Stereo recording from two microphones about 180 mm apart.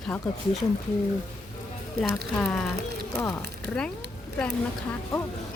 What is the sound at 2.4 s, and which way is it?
Speech, 5° left (ahead or behind).